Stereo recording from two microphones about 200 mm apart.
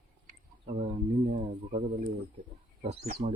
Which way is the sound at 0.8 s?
40° right (ahead or behind).